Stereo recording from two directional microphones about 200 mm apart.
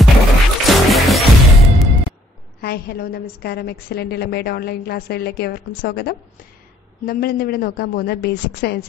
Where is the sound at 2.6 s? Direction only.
50° left (ahead or behind).